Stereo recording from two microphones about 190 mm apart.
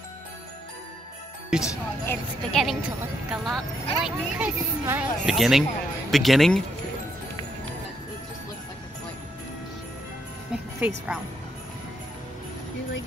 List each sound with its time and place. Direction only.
1.6 s speech: 15° left (ahead or behind)
2.5 s speech: centre (ahead or behind)
10.5 s music: 5° right (ahead or behind)